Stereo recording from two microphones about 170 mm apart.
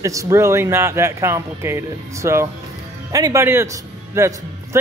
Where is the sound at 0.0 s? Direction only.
20° right (ahead or behind).